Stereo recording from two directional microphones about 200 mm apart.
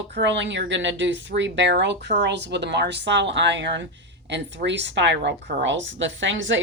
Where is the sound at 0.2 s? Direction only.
60° right (ahead or behind).